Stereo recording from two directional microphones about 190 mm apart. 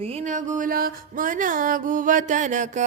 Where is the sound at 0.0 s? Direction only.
35° right (ahead or behind).